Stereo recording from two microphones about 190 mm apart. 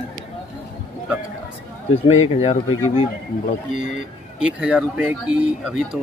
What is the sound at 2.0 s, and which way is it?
Speech, 35° left (ahead or behind).